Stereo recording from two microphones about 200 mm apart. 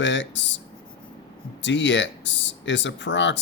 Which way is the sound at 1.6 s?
65° left (ahead or behind).